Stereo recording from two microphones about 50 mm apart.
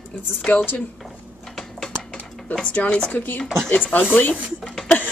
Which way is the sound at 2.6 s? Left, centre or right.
Left.